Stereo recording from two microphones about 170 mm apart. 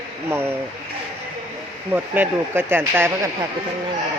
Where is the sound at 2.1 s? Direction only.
10° right (ahead or behind).